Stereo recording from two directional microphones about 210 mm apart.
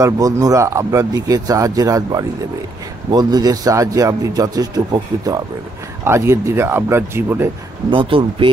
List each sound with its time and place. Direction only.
0.0 s a man's voice: 15° right (ahead or behind)
7.9 s speech: 25° right (ahead or behind)